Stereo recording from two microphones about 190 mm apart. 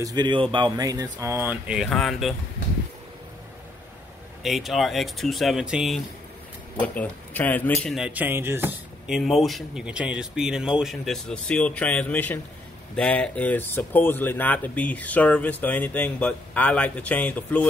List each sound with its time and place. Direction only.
0.0 s speech: 20° right (ahead or behind); by 2.3 s centre (ahead or behind)
4.4 s speech: centre (ahead or behind)